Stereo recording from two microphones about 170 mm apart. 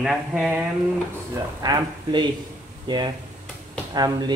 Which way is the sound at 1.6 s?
25° right (ahead or behind).